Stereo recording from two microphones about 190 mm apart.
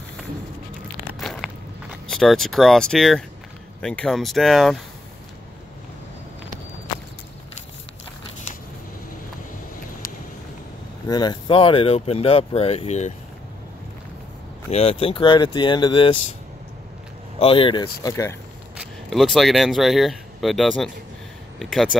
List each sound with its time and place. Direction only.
1.2 s walk: centre (ahead or behind)
3.8 s speech: 5° left (ahead or behind)
11.1 s speech: 20° left (ahead or behind)
14.7 s speech: 30° left (ahead or behind)
17.4 s speech: 30° left (ahead or behind)
18.8 s speech: centre (ahead or behind)